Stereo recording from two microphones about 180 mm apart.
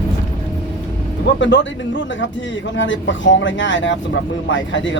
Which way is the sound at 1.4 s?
85° left.